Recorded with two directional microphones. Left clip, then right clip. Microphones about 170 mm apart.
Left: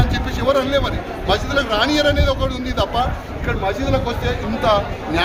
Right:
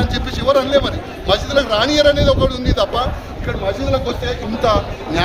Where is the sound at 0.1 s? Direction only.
20° right (ahead or behind).